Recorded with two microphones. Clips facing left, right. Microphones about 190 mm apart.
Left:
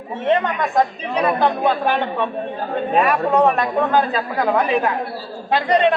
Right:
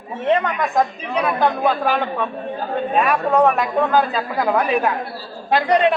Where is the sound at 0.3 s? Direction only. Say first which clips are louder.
Left 1 dB; centre (ahead or behind).